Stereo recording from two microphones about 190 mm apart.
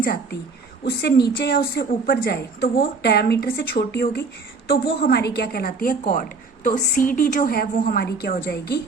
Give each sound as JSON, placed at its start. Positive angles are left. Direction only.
{"t": 0.0, "sound": "a woman's voice", "side_deg": 55}